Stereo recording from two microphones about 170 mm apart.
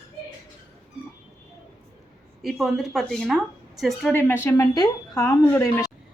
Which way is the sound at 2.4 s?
Centre (ahead or behind).